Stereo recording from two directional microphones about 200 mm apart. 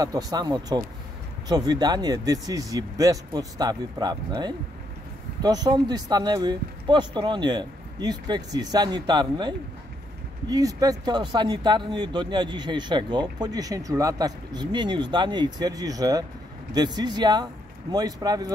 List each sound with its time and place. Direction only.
0.0 s speech: 20° right (ahead or behind)